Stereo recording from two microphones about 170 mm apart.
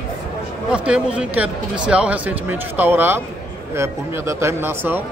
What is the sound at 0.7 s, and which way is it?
Speech, 5° right (ahead or behind).